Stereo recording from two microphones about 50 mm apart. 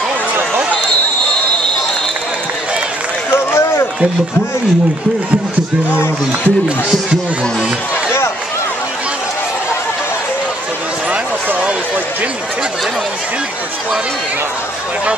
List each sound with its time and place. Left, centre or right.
3.3 s run: left